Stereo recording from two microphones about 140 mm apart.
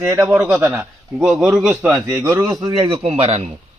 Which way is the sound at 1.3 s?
5° right (ahead or behind).